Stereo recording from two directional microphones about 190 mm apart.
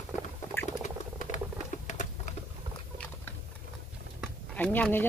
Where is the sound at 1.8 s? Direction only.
40° left (ahead or behind).